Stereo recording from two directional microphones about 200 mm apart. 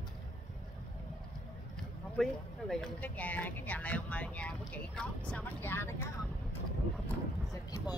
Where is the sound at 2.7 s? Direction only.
5° left (ahead or behind).